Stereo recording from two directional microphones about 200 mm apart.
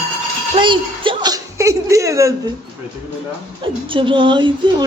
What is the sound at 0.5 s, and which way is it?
Chuckle, 25° right (ahead or behind).